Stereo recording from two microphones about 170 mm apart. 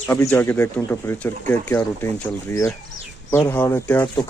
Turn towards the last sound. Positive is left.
turn(degrees=10)  # may be behind; listen again after turning